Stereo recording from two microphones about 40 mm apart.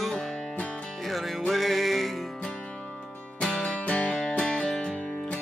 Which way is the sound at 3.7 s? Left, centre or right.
Left.